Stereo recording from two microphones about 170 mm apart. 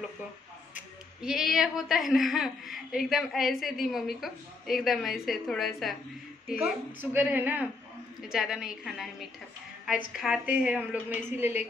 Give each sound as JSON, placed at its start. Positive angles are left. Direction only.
{"t": 0.7, "sound": "a woman's voice", "side_deg": 0}
{"t": 6.6, "sound": "a woman's voice", "side_deg": -10}
{"t": 10.1, "sound": "a woman's voice", "side_deg": -5}